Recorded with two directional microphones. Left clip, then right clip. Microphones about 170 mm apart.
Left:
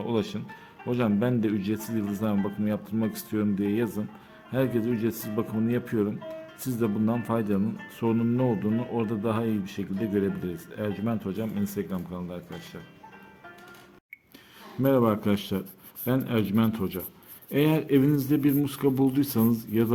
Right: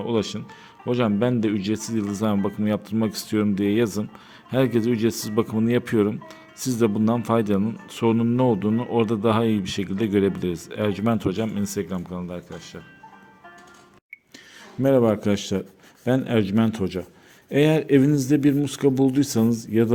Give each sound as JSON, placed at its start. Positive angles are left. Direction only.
{"t": 0.0, "sound": "speech", "side_deg": -25}
{"t": 14.8, "sound": "speech", "side_deg": -30}